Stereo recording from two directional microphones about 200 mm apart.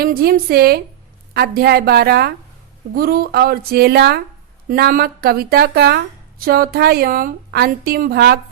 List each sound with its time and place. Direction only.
0.0 s a woman's voice: 50° right (ahead or behind)